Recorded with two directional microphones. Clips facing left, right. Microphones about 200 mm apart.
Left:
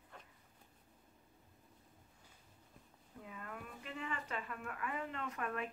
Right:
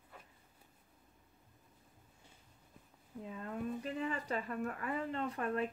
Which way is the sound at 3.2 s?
30° right (ahead or behind).